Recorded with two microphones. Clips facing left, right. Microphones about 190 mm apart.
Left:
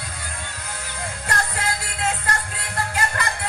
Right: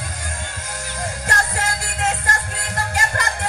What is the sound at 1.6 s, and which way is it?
Music, 45° right (ahead or behind).